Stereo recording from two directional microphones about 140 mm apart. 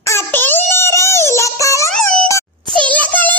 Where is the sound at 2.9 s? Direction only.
10° left (ahead or behind).